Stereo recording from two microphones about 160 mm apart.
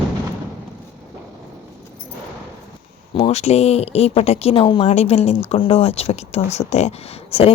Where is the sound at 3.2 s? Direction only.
40° left (ahead or behind).